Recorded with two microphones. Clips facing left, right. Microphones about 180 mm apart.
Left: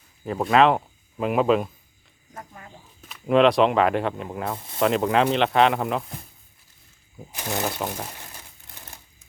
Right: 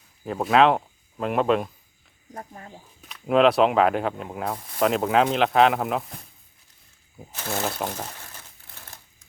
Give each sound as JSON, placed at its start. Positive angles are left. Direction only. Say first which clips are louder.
{"t": 0.3, "sound": "speech", "louder": "even", "side_deg": 0}
{"t": 2.3, "sound": "speech", "louder": "right 3 dB", "side_deg": -35}
{"t": 3.0, "sound": "speech", "louder": "left 1 dB", "side_deg": 0}
{"t": 7.3, "sound": "speech", "louder": "left 1 dB", "side_deg": 15}
{"t": 7.9, "sound": "crumpling", "louder": "even", "side_deg": 10}